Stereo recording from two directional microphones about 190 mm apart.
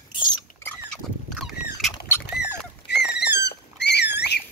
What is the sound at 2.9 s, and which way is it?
Rodents, 60° left (ahead or behind).